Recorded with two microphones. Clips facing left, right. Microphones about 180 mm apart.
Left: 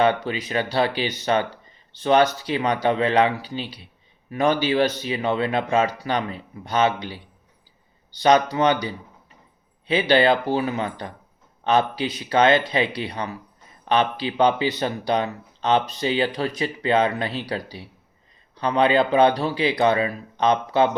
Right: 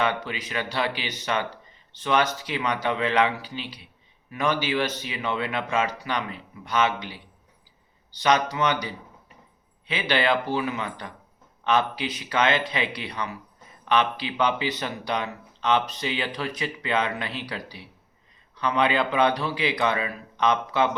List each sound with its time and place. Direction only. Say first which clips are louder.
0.0 s speech: left 6 dB; 35° left (ahead or behind)
8.2 s speech: left 5 dB; 30° left (ahead or behind)